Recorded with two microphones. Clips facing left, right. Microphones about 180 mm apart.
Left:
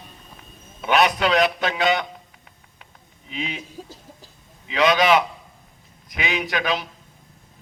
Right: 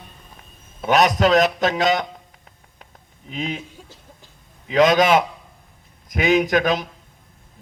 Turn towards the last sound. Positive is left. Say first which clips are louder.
# right 6 dB
turn(degrees=-45)  # may be behind; listen again after turning